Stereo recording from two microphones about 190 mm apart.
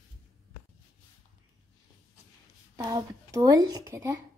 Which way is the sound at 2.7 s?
20° right (ahead or behind).